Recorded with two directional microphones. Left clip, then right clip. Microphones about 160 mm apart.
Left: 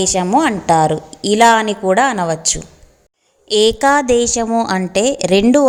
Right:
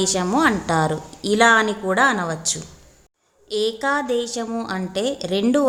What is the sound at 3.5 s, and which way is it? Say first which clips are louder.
A woman's voice: left 9 dB; 45° left (ahead or behind).